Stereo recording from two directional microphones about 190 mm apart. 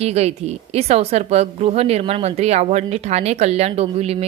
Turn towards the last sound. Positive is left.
turn(degrees=-35)  # may be behind; listen again after turning